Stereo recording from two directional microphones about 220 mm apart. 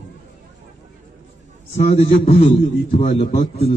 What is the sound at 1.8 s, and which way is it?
A man's voice, 30° left (ahead or behind).